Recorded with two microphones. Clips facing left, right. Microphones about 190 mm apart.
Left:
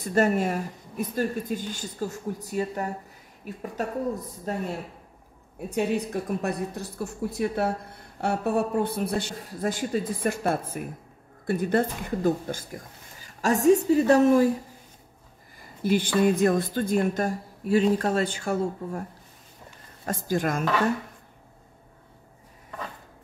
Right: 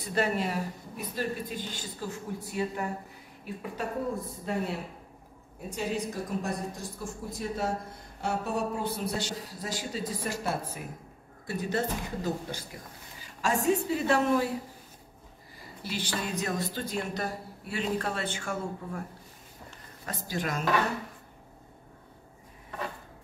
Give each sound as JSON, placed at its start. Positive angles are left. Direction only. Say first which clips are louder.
{"t": 0.0, "sound": "a woman's voice", "louder": "left 6 dB", "side_deg": 45}
{"t": 5.8, "sound": "a woman's voice", "louder": "left 6 dB", "side_deg": 60}
{"t": 15.8, "sound": "a woman's voice", "louder": "left 12 dB", "side_deg": 50}
{"t": 20.1, "sound": "a woman's voice", "louder": "left 7 dB", "side_deg": 45}